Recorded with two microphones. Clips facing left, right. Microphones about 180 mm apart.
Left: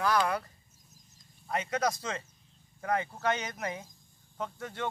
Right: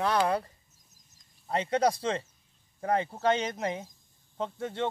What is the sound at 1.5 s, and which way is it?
Speech, 30° right (ahead or behind).